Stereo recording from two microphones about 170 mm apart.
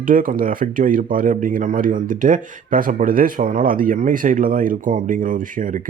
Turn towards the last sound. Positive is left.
turn(degrees=-50)  # may be behind; listen again after turning